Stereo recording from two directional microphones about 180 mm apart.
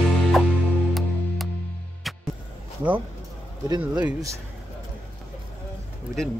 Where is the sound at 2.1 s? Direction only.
Centre (ahead or behind).